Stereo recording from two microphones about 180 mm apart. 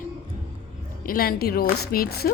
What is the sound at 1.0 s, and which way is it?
A woman's voice, 55° left (ahead or behind).